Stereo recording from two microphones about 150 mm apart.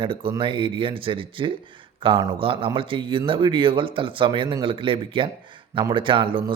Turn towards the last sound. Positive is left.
turn(degrees=-35)  # may be behind; listen again after turning